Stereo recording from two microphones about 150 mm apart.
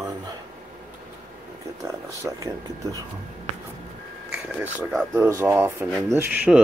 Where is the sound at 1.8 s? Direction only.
20° right (ahead or behind).